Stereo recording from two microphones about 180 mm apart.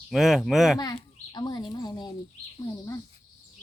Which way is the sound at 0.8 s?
25° left (ahead or behind).